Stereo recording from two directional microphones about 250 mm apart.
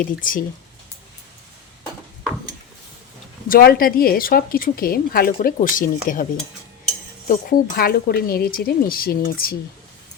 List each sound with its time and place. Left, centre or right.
0.0 s speech: left
3.5 s speech: left
7.3 s speech: left